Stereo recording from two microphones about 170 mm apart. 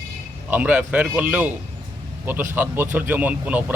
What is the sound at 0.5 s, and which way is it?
A man's voice, 10° right (ahead or behind).